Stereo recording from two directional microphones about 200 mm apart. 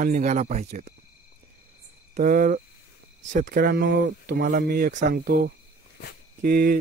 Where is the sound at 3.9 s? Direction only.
60° right (ahead or behind).